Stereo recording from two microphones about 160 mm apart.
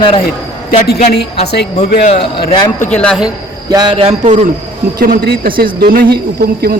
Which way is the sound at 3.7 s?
30° right (ahead or behind).